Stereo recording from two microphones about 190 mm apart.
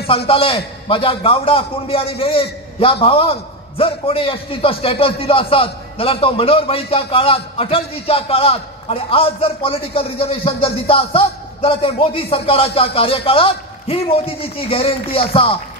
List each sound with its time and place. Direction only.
0.3 s a man's voice: 30° left (ahead or behind)